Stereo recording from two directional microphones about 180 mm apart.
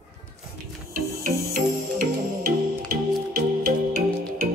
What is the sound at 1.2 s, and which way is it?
Music, 55° right (ahead or behind).